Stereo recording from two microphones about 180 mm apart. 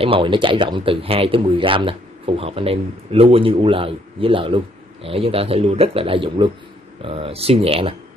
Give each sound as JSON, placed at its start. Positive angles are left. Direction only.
{"t": 0.0, "sound": "speech", "side_deg": -30}